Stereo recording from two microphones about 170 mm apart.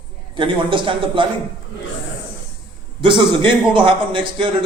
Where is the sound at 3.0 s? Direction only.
30° right (ahead or behind).